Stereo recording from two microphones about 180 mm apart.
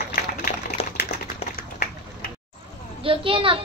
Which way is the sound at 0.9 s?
55° left (ahead or behind).